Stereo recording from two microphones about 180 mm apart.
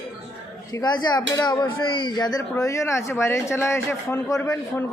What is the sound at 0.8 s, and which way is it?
Speech, 25° left (ahead or behind).